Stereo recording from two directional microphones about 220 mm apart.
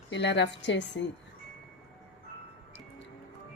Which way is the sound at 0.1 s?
55° left (ahead or behind).